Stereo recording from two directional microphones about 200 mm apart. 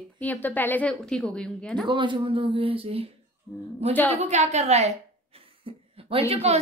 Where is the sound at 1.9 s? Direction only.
25° right (ahead or behind).